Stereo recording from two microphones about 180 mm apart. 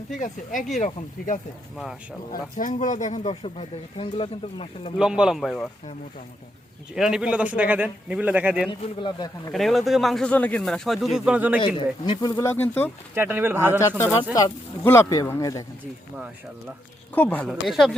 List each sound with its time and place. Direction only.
0.1 s speech: 45° left (ahead or behind)
1.7 s speech: centre (ahead or behind)
2.3 s speech: 45° left (ahead or behind); by 4.9 s 30° left (ahead or behind)
4.9 s speech: 5° right (ahead or behind)
6.9 s speech: 5° right (ahead or behind)
9.0 s a man's voice: 25° left (ahead or behind)
9.5 s speech: centre (ahead or behind)
12.0 s speech: 25° left (ahead or behind); by 12.9 s 10° left (ahead or behind)
13.1 s speech: 10° right (ahead or behind)
14.3 s speech: 15° left (ahead or behind)
17.2 s speech: 10° left (ahead or behind)